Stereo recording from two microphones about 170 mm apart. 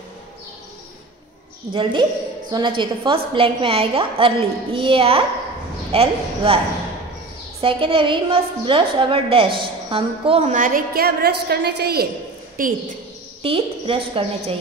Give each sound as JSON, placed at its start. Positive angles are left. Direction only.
{"t": 1.7, "sound": "a woman's voice", "side_deg": -30}
{"t": 7.6, "sound": "a woman's voice", "side_deg": -30}
{"t": 12.6, "sound": "a woman's voice", "side_deg": -55}
{"t": 13.4, "sound": "a woman's voice", "side_deg": -35}